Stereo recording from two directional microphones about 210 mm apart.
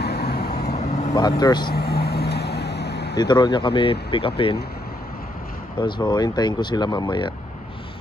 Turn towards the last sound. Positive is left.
turn(degrees=20)  # may be behind; listen again after turning